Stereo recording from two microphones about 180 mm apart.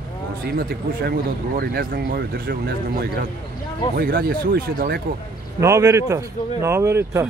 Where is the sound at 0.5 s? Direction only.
60° right (ahead or behind).